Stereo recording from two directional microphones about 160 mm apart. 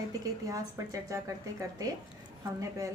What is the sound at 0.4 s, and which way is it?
Speech, 20° right (ahead or behind).